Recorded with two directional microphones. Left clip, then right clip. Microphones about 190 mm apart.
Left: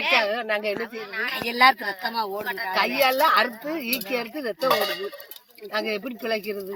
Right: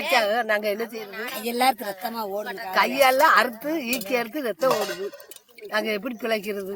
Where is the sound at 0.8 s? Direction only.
85° right; by 2.2 s 55° right (ahead or behind).